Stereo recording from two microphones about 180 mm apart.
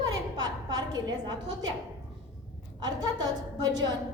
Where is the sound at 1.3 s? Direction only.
25° right (ahead or behind).